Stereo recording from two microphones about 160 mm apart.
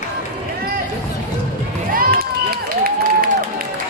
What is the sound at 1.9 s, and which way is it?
Crowd, 65° right (ahead or behind).